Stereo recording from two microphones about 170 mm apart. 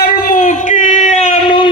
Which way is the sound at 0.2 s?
50° left (ahead or behind).